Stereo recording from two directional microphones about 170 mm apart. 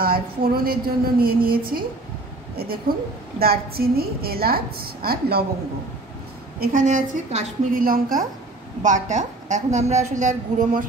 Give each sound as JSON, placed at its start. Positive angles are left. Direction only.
{"t": 0.0, "sound": "a woman's voice", "side_deg": -60}
{"t": 3.3, "sound": "a woman's voice", "side_deg": -60}
{"t": 6.6, "sound": "a woman's voice", "side_deg": -50}
{"t": 7.8, "sound": "a woman's voice", "side_deg": -55}